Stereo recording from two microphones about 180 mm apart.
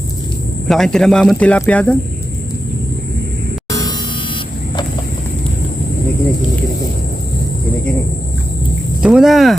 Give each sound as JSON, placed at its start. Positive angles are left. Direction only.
{"t": 0.7, "sound": "speech", "side_deg": 0}
{"t": 3.7, "sound": "music", "side_deg": 20}
{"t": 9.0, "sound": "speech", "side_deg": -5}